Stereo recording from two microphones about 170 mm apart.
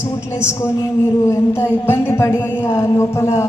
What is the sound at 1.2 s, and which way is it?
A woman's voice, 15° left (ahead or behind).